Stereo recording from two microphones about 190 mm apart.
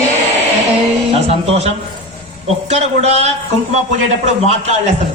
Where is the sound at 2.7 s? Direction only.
35° right (ahead or behind).